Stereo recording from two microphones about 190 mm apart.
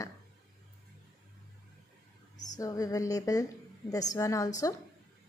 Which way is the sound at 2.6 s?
20° left (ahead or behind).